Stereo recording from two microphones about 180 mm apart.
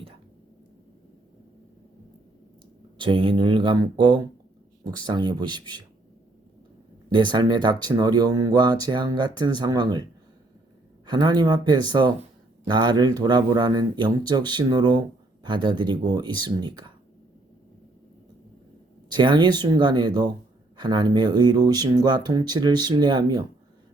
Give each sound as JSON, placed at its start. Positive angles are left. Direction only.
{"t": 3.0, "sound": "speech", "side_deg": -30}
{"t": 7.1, "sound": "speech", "side_deg": -25}
{"t": 19.0, "sound": "speech", "side_deg": -25}